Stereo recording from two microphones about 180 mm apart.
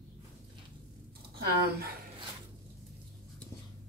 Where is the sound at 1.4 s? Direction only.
60° right (ahead or behind).